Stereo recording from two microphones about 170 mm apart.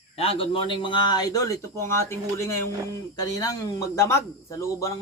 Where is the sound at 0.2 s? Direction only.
30° left (ahead or behind); by 2.1 s 15° left (ahead or behind).